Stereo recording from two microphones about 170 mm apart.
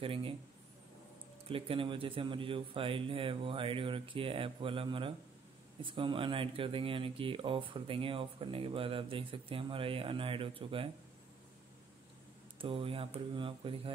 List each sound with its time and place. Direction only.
0.0 s speech: 30° right (ahead or behind)
1.5 s speech: 30° right (ahead or behind)
12.5 s speech: 30° right (ahead or behind)